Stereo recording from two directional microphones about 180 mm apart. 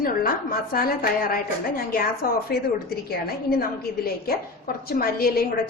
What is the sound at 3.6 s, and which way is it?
A woman's voice, 55° left (ahead or behind).